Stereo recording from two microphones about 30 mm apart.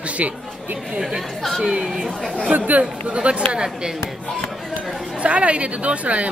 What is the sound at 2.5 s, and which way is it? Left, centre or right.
Speech, right.